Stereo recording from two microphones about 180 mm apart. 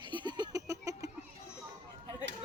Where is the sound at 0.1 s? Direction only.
25° right (ahead or behind).